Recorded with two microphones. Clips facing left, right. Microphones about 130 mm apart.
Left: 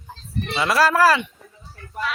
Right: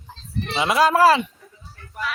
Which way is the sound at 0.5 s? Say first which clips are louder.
Right 1 dB; 20° right (ahead or behind).